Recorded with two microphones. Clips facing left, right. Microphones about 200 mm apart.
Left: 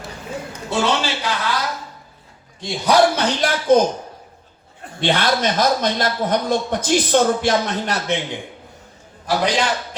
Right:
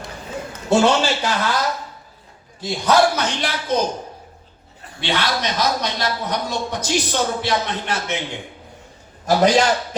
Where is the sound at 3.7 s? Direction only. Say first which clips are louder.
Left 7 dB; 50° left (ahead or behind).